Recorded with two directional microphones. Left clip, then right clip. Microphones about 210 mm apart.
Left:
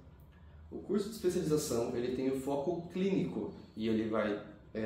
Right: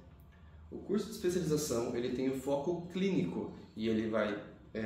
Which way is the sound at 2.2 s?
20° right (ahead or behind).